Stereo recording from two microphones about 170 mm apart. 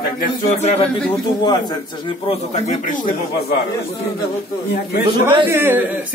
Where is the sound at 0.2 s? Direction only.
40° left (ahead or behind).